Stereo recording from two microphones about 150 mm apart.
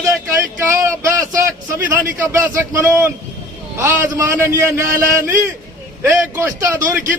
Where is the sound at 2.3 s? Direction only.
20° right (ahead or behind).